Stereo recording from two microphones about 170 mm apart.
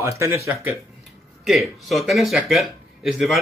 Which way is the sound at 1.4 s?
Centre (ahead or behind).